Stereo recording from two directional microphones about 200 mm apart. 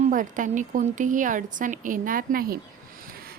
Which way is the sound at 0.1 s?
40° right (ahead or behind).